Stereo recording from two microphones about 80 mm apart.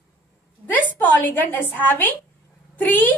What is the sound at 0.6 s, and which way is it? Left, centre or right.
A woman's voice, left.